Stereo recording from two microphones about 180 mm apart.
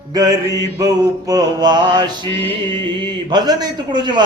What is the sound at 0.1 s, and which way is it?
A man's voice, 20° right (ahead or behind).